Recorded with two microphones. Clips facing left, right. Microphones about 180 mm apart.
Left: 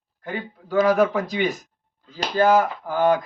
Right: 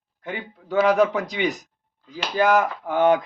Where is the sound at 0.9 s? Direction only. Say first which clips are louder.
Right 1 dB; 20° right (ahead or behind).